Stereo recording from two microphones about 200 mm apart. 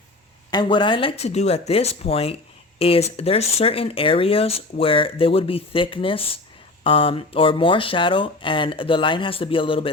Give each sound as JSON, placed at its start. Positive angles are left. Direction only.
{"t": 0.5, "sound": "speech", "side_deg": 20}